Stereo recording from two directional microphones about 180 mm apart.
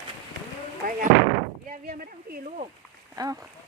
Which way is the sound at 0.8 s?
55° right (ahead or behind).